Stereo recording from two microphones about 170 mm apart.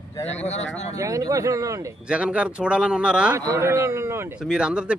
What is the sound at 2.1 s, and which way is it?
Speech, 5° right (ahead or behind).